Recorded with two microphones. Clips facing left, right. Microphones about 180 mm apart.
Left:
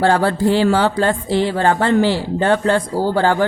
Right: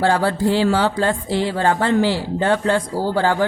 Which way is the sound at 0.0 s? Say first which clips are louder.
Left 2 dB; 60° left (ahead or behind).